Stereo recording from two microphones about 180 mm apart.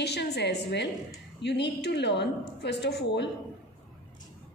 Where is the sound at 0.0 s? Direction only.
70° left (ahead or behind).